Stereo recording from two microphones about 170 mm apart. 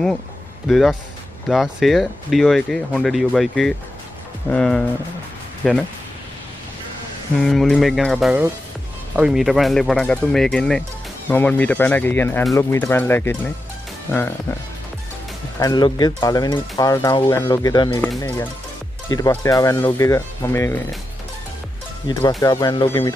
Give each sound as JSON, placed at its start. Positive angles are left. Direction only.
{"t": 0.7, "sound": "speech", "side_deg": 0}
{"t": 7.3, "sound": "speech", "side_deg": 5}
{"t": 15.6, "sound": "speech", "side_deg": 25}
{"t": 18.0, "sound": "speech", "side_deg": 10}
{"t": 19.0, "sound": "speech", "side_deg": 20}
{"t": 22.4, "sound": "speech", "side_deg": 20}